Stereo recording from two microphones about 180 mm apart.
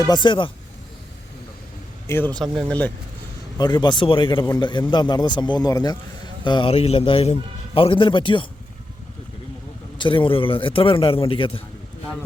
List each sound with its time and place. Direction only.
0.0 s speech: 25° left (ahead or behind)
2.0 s speech: 10° left (ahead or behind)
3.6 s speech: 25° left (ahead or behind)
10.0 s speech: 30° left (ahead or behind)